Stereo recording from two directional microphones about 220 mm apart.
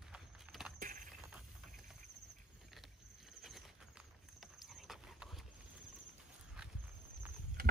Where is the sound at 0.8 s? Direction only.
40° right (ahead or behind).